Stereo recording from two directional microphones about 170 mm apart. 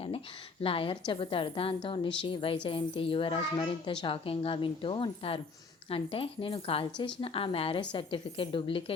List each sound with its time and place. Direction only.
0.6 s a woman's voice: 30° left (ahead or behind)